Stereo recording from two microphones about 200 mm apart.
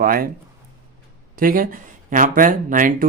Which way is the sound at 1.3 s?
45° right (ahead or behind).